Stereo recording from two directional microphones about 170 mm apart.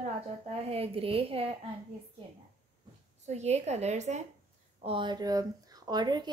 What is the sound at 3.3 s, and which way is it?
Speech, 40° right (ahead or behind).